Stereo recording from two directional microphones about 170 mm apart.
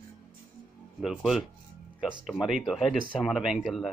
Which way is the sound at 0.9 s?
Centre (ahead or behind).